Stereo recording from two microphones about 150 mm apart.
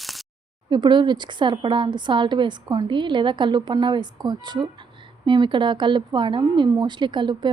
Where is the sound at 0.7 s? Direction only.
30° right (ahead or behind).